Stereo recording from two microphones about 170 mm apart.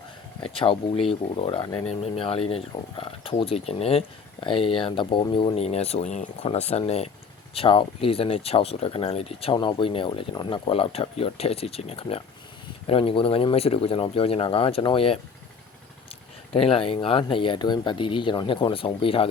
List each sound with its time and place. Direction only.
0.4 s speech: 30° left (ahead or behind)
16.5 s speech: 35° left (ahead or behind)